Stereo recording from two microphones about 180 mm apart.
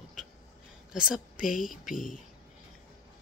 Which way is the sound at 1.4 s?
50° left (ahead or behind).